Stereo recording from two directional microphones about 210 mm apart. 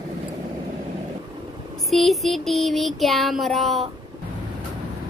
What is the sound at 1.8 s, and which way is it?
Child singing, centre (ahead or behind).